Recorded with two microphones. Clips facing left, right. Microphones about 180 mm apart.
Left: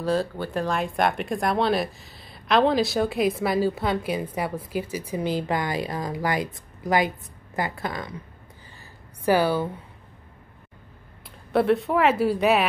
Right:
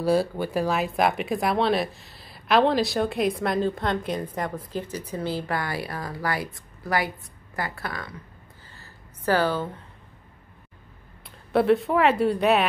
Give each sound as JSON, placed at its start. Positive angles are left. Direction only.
{"t": 0.0, "sound": "speech", "side_deg": -10}
{"t": 8.7, "sound": "a sound", "side_deg": 10}
{"t": 11.5, "sound": "speech", "side_deg": 0}